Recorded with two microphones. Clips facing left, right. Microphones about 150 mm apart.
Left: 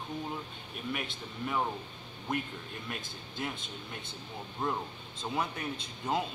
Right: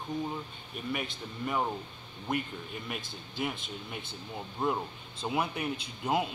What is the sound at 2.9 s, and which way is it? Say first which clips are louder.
A man's voice: right 2 dB; 5° right (ahead or behind).